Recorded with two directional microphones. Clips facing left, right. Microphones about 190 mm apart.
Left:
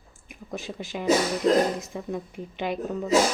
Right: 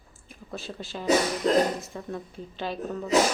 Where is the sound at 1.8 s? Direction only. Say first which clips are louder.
Left 3 dB; 15° left (ahead or behind).